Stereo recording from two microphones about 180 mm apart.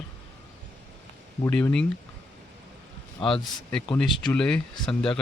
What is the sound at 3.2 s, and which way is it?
Speech, 25° left (ahead or behind).